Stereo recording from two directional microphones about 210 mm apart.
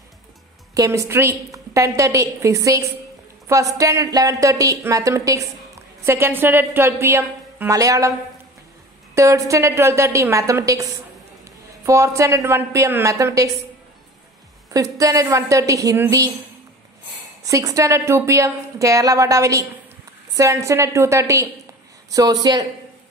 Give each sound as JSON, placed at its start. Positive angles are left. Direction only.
{"t": 0.7, "sound": "a woman's voice", "side_deg": -15}
{"t": 9.1, "sound": "a woman's voice", "side_deg": -15}
{"t": 11.4, "sound": "a sound", "side_deg": -15}
{"t": 12.2, "sound": "a woman's voice", "side_deg": -15}
{"t": 14.7, "sound": "a woman's voice", "side_deg": -15}
{"t": 17.5, "sound": "a woman's voice", "side_deg": -15}